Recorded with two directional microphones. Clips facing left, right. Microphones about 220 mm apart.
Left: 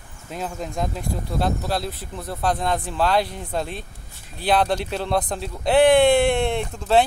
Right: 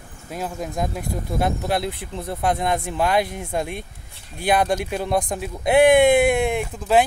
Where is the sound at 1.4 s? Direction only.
20° right (ahead or behind).